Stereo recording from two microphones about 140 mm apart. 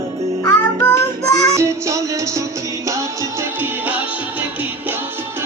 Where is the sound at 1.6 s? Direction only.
20° right (ahead or behind).